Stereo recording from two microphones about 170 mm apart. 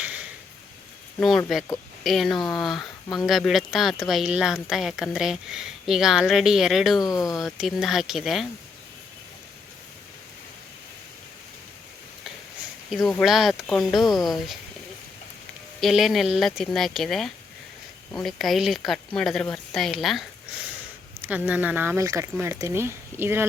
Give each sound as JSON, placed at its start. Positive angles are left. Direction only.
{"t": 0.0, "sound": "a sound", "side_deg": -10}
{"t": 1.5, "sound": "a woman's voice", "side_deg": 0}
{"t": 7.0, "sound": "speech", "side_deg": 20}
{"t": 7.3, "sound": "a woman's voice", "side_deg": 0}
{"t": 12.9, "sound": "a woman's voice", "side_deg": 0}
{"t": 15.8, "sound": "a woman's voice", "side_deg": 0}